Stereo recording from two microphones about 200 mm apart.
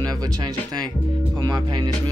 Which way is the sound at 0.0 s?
20° right (ahead or behind).